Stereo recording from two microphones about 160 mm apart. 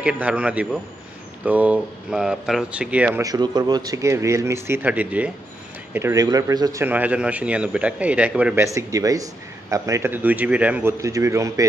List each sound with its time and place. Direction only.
0.0 s a man's voice: 10° right (ahead or behind)
3.2 s a man's voice: 25° right (ahead or behind); by 8.6 s 10° right (ahead or behind)
8.6 s a man's voice: 20° right (ahead or behind)